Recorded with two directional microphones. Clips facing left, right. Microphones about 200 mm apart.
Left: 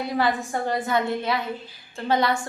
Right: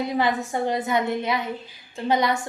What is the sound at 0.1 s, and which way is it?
A woman's voice, 20° right (ahead or behind).